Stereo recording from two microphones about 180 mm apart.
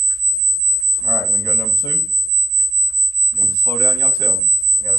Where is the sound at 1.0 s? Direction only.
15° left (ahead or behind).